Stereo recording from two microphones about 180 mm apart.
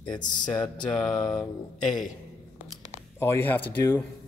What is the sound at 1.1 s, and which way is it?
Speech, 25° left (ahead or behind).